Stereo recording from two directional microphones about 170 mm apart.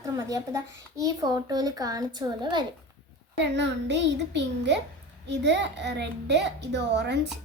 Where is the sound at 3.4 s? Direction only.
90° right.